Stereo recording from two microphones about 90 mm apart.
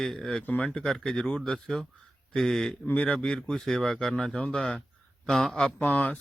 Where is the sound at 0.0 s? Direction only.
5° left (ahead or behind).